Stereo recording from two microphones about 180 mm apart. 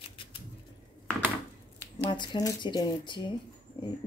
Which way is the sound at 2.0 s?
25° left (ahead or behind).